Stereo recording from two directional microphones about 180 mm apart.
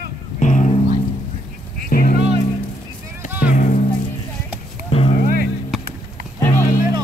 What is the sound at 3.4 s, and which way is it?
Music, 50° left (ahead or behind).